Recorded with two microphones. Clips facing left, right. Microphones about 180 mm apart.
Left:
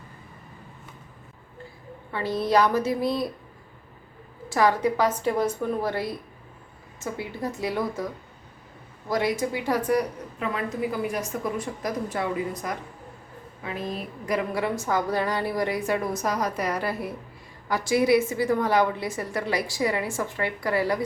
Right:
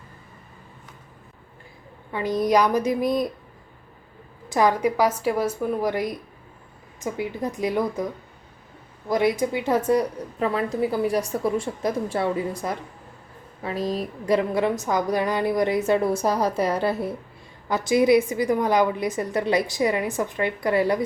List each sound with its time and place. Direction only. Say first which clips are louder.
2.1 s a woman's voice: right 2 dB; 15° right (ahead or behind)
4.4 s a woman's voice: right 2 dB; 15° right (ahead or behind)
9.0 s a woman's voice: right 4 dB; 20° right (ahead or behind)